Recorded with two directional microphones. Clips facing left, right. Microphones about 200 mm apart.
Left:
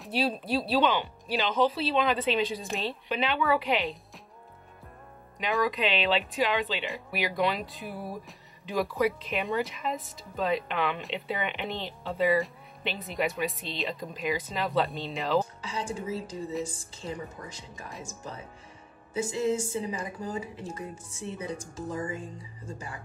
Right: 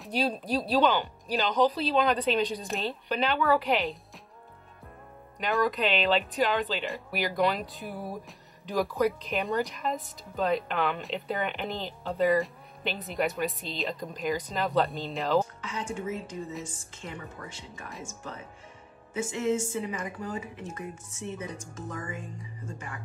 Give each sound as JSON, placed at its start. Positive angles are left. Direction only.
{"t": 0.0, "sound": "speech", "side_deg": 0}
{"t": 5.4, "sound": "speech", "side_deg": 0}
{"t": 15.6, "sound": "speech", "side_deg": 35}
{"t": 19.1, "sound": "speech", "side_deg": 35}